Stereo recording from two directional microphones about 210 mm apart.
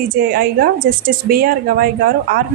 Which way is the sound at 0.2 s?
45° right (ahead or behind).